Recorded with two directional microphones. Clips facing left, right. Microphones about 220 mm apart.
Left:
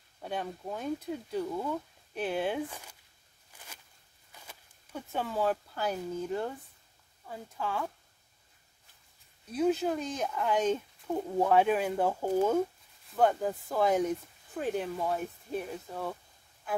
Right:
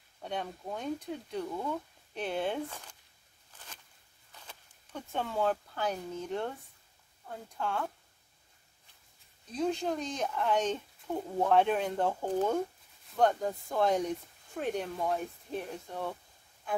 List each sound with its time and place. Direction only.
0.2 s speech: 5° left (ahead or behind)
3.5 s a sound: 10° left (ahead or behind)
4.3 s speech: 10° left (ahead or behind)
9.5 s speech: 5° left (ahead or behind)